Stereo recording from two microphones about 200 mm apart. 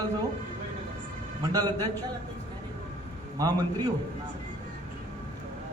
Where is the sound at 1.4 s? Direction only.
20° right (ahead or behind).